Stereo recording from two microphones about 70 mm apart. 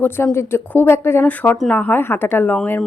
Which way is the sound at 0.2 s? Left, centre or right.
Left.